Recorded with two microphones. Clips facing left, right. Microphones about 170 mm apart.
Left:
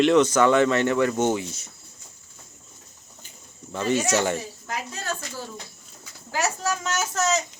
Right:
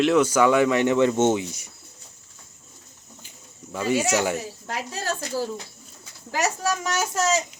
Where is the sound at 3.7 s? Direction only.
10° right (ahead or behind).